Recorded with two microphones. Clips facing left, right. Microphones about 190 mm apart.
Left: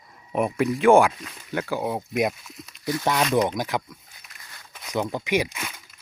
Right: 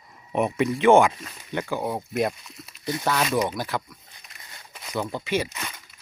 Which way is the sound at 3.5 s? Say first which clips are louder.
Left 2 dB; 15° left (ahead or behind).